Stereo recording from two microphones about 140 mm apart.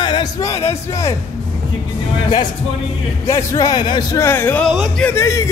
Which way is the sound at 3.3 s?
20° left (ahead or behind).